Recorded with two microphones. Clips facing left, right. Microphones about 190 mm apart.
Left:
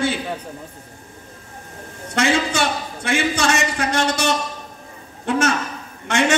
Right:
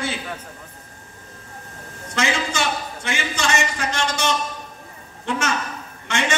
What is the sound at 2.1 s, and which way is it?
A woman's voice, 55° left (ahead or behind).